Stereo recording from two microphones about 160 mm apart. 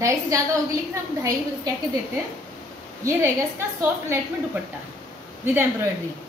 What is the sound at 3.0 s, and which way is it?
Speech, 15° right (ahead or behind).